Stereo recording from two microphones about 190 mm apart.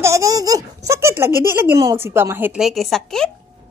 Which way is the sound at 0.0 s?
15° right (ahead or behind).